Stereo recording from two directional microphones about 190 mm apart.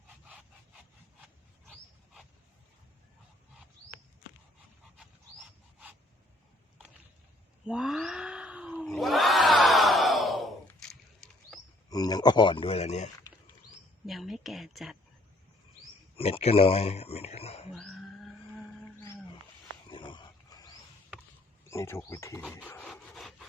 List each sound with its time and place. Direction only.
7.7 s crowd: 5° right (ahead or behind)
11.9 s speech: 20° left (ahead or behind); by 13.1 s 35° left (ahead or behind)
14.1 s a sound: centre (ahead or behind)
16.1 s speech: 30° left (ahead or behind)
17.7 s wild animals: centre (ahead or behind)
19.9 s a sound: 25° left (ahead or behind)
21.7 s speech: 15° left (ahead or behind)
22.6 s wood: 5° left (ahead or behind)